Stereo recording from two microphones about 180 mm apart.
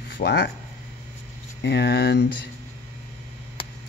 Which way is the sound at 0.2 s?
70° left (ahead or behind).